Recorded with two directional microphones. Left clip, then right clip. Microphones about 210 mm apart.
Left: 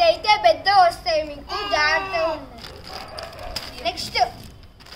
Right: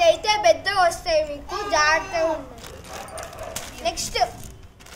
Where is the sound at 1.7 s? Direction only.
15° right (ahead or behind).